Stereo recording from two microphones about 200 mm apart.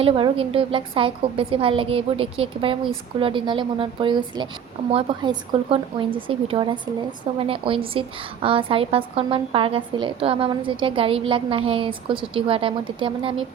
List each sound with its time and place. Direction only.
0.0 s a woman's voice: 30° right (ahead or behind)